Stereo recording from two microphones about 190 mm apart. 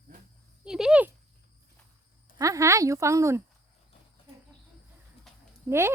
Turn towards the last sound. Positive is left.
turn(degrees=-15)  # may be behind; listen again after turning